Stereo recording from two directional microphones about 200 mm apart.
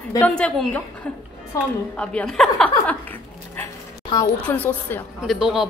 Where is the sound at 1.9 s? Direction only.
5° left (ahead or behind).